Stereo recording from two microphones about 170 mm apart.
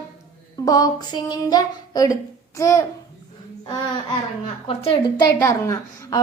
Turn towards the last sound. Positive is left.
turn(degrees=20)  # may be behind; listen again after turning